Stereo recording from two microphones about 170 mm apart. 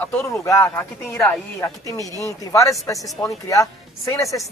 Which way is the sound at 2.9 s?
Centre (ahead or behind).